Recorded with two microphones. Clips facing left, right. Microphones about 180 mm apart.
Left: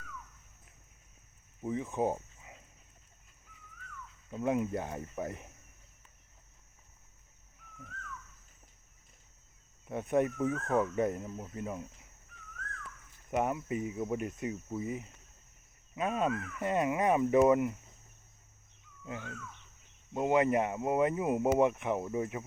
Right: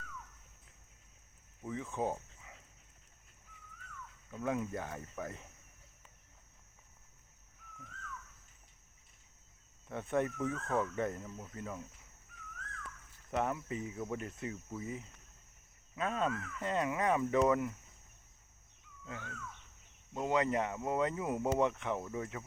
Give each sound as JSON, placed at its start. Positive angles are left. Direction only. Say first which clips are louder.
{"t": 1.6, "sound": "speech", "louder": "left 5 dB", "side_deg": 20}
{"t": 4.3, "sound": "speech", "louder": "left 5 dB", "side_deg": 20}
{"t": 9.9, "sound": "speech", "louder": "left 4 dB", "side_deg": 15}
{"t": 13.3, "sound": "speech", "louder": "left 4 dB", "side_deg": 15}
{"t": 19.0, "sound": "speech", "louder": "left 4 dB", "side_deg": 20}